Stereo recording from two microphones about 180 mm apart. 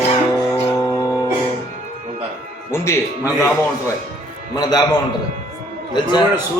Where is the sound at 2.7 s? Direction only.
15° left (ahead or behind).